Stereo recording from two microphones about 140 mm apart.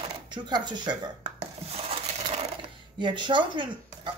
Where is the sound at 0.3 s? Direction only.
30° right (ahead or behind).